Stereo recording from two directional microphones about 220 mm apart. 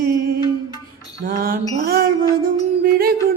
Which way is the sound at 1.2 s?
40° right (ahead or behind).